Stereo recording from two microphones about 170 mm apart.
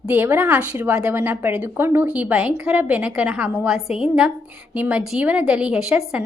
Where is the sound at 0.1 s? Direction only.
15° right (ahead or behind).